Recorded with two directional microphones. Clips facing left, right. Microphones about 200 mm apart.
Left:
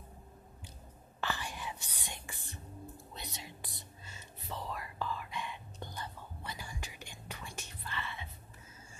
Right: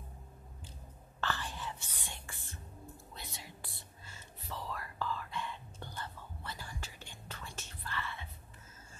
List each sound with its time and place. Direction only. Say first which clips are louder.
1.2 s whispering: even; 15° left (ahead or behind)